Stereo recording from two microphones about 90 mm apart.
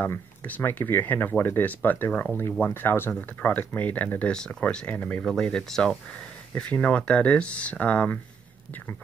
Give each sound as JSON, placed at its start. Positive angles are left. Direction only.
{"t": 0.0, "sound": "speech", "side_deg": 20}
{"t": 5.2, "sound": "speech", "side_deg": 5}